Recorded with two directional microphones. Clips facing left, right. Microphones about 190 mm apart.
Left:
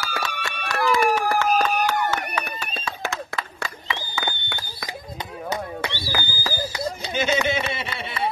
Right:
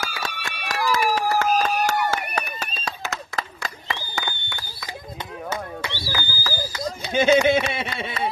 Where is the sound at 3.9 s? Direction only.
15° left (ahead or behind).